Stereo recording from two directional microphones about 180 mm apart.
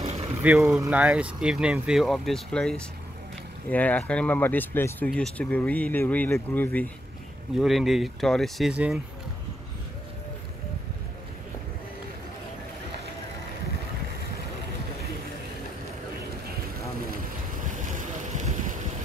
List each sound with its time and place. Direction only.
0.4 s speech: 10° right (ahead or behind)
17.8 s vehicle: 45° right (ahead or behind)